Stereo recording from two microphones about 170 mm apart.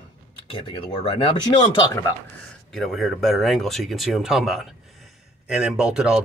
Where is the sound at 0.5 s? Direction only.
30° left (ahead or behind).